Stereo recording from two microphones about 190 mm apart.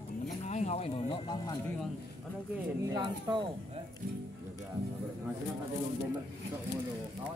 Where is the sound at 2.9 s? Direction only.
25° right (ahead or behind).